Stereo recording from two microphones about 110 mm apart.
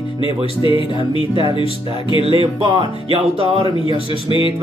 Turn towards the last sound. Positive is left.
turn(degrees=-55)  # may be behind; listen again after turning